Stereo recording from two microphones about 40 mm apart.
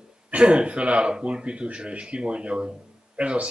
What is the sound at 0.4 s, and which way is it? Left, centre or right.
Speech, right.